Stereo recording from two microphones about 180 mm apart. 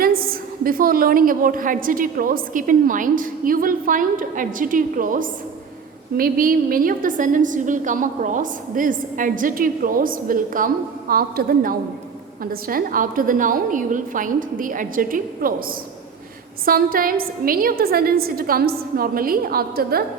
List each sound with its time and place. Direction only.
0.0 s a woman's voice: 55° right (ahead or behind)
16.6 s a woman's voice: 55° right (ahead or behind)